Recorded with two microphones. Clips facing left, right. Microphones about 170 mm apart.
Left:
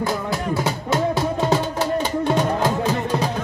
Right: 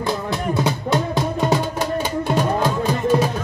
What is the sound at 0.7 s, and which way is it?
Music, 15° right (ahead or behind).